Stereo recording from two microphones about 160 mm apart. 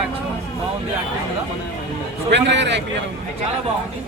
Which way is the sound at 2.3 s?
90° right.